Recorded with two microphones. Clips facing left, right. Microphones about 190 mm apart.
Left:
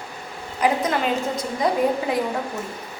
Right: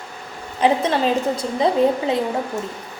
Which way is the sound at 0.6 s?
25° right (ahead or behind).